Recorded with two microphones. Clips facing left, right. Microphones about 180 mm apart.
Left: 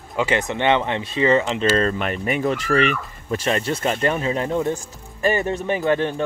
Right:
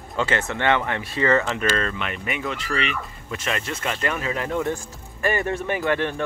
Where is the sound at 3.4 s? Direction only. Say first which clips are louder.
Left 6 dB; 35° left (ahead or behind).